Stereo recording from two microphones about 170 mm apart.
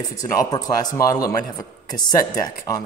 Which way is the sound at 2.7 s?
20° left (ahead or behind).